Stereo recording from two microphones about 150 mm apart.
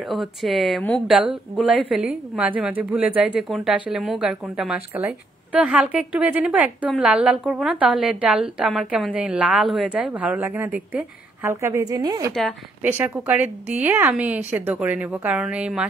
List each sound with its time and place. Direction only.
0.0 s a woman's voice: centre (ahead or behind); by 12.3 s 25° right (ahead or behind)
12.8 s a woman's voice: 15° right (ahead or behind)